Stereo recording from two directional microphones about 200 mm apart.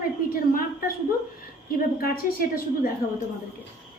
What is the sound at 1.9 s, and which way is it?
Speech, 45° left (ahead or behind).